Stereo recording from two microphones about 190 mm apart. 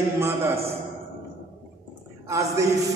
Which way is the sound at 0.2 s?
15° right (ahead or behind).